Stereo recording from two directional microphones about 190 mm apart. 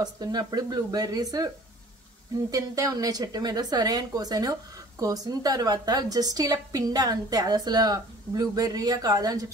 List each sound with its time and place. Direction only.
0.0 s a woman's voice: 20° right (ahead or behind)
2.5 s a woman's voice: 20° right (ahead or behind)